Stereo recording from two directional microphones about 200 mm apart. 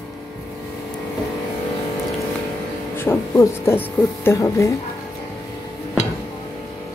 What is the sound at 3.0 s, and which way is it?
Speech, 10° left (ahead or behind).